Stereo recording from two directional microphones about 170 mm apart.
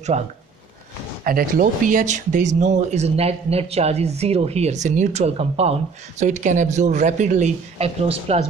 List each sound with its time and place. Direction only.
0.1 s speech: 40° right (ahead or behind)
1.2 s speech: 55° right (ahead or behind); by 8.4 s 40° right (ahead or behind)